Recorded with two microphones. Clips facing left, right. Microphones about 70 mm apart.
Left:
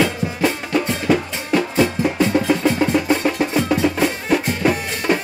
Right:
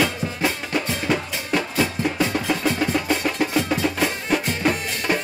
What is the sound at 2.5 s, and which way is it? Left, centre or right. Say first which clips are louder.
Music: left 5 dB; left.